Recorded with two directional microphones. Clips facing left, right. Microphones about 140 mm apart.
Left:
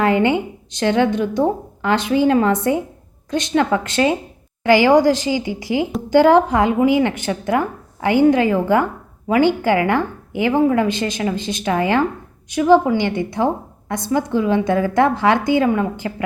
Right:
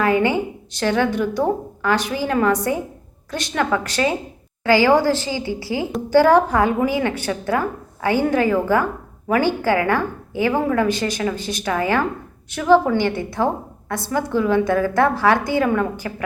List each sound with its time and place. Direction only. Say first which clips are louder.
0.0 s a woman's voice: left 2 dB; 25° left (ahead or behind)